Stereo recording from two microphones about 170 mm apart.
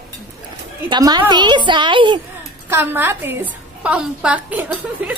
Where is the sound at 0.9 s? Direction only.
25° right (ahead or behind).